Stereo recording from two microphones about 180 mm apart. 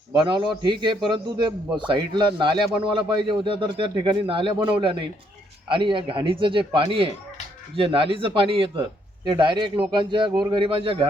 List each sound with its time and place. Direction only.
0.3 s a man's voice: 25° right (ahead or behind)